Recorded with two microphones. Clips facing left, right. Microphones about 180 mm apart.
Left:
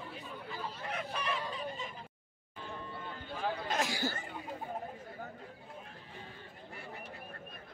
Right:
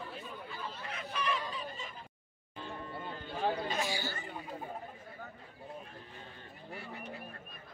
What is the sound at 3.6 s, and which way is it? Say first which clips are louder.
Chatter: left 1 dB; 90° left.